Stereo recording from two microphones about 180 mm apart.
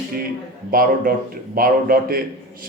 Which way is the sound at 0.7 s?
55° right (ahead or behind).